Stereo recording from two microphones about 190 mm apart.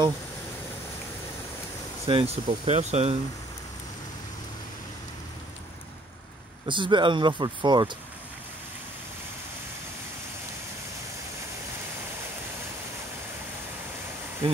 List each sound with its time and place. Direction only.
2.0 s speech: 30° right (ahead or behind)
6.6 s speech: 25° right (ahead or behind)